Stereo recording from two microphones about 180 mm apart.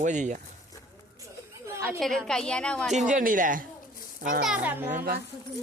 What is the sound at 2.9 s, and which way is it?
Speech, 45° right (ahead or behind).